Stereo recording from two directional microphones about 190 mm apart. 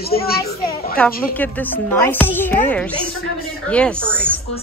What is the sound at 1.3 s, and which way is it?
A woman's voice, 10° left (ahead or behind).